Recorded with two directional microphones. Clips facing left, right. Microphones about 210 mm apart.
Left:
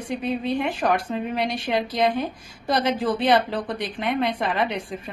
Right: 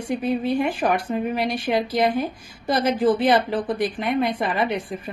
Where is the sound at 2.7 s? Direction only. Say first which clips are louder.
Right 3 dB; centre (ahead or behind).